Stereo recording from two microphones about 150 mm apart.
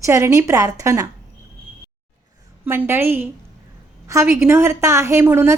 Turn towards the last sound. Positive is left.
turn(degrees=-15)  # may be behind; listen again after turning